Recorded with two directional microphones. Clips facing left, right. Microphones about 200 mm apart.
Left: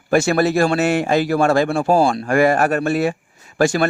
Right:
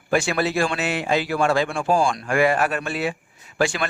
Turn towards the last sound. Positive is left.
turn(degrees=40)  # may be behind; listen again after turning